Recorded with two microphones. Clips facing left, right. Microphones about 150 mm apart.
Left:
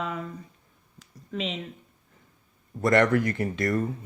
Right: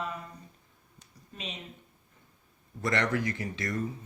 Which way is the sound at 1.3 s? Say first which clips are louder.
Left 11 dB; 90° left.